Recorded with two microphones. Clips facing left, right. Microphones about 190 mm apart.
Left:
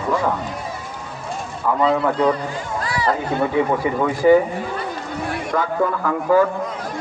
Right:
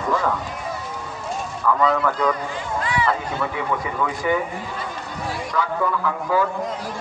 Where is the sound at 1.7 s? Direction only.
25° left (ahead or behind).